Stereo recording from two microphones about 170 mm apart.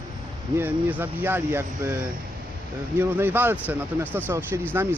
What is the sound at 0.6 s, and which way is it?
Speech, 10° right (ahead or behind).